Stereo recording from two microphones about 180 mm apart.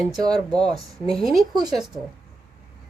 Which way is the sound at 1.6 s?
20° right (ahead or behind).